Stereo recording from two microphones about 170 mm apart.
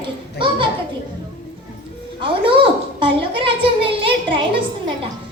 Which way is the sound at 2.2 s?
30° right (ahead or behind).